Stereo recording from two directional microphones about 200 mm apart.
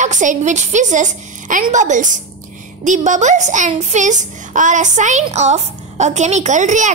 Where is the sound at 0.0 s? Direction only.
40° right (ahead or behind).